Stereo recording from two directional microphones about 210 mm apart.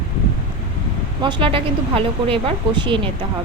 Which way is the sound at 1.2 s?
25° right (ahead or behind).